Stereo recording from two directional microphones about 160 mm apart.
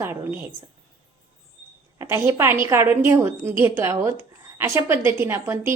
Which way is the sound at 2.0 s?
20° right (ahead or behind).